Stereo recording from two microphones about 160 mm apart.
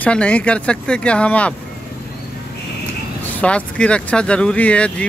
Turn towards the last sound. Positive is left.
turn(degrees=5)  # may be behind; listen again after turning